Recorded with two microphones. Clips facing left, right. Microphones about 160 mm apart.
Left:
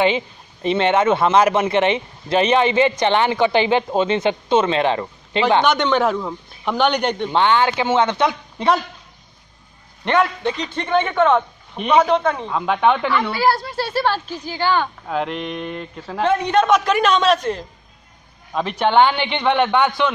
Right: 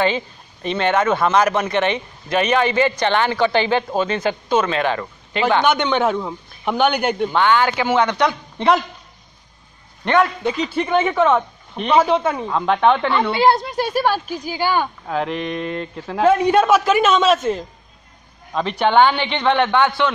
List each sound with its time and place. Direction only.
0.0 s speech: 20° left (ahead or behind)
5.6 s speech: centre (ahead or behind)
7.2 s speech: 25° left (ahead or behind)
10.0 s a man's voice: 10° left (ahead or behind)
10.4 s speech: 5° right (ahead or behind)
13.1 s speech: 25° right (ahead or behind)
15.0 s a man's voice: centre (ahead or behind); by 20.1 s 15° left (ahead or behind)